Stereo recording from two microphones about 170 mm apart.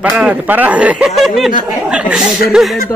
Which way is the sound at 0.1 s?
5° right (ahead or behind).